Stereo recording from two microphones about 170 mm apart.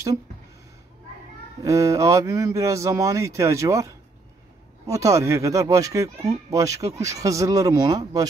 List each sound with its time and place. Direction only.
1.6 s a man's voice: 20° right (ahead or behind)